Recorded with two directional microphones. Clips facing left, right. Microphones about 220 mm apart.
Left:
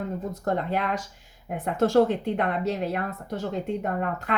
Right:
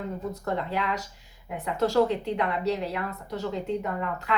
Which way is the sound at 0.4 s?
50° left (ahead or behind).